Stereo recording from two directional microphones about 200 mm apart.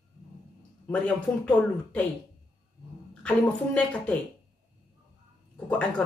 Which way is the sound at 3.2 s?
5° left (ahead or behind).